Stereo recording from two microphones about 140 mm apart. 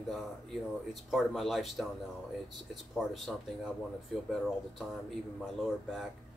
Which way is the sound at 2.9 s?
Centre (ahead or behind).